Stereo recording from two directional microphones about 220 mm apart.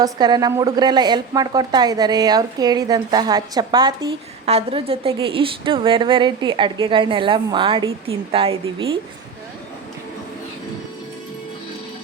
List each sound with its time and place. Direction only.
0.0 s a woman's voice: 15° right (ahead or behind)